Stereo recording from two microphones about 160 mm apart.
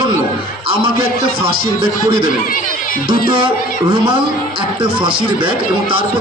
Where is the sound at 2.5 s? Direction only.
55° left (ahead or behind).